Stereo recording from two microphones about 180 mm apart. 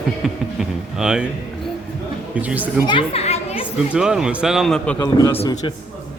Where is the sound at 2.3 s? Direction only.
10° right (ahead or behind).